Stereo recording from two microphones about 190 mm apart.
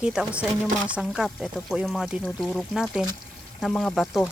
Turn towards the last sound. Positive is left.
turn(degrees=0)  # may be behind; listen again after turning